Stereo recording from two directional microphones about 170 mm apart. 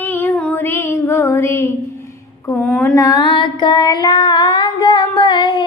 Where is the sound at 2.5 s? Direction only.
5° left (ahead or behind).